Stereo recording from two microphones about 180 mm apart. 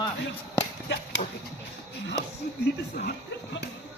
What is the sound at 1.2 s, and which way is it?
Speech, 45° left (ahead or behind).